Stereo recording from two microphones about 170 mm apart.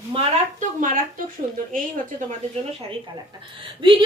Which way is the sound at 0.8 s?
50° right (ahead or behind).